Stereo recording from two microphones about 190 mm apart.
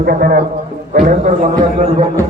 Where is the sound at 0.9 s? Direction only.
40° right (ahead or behind).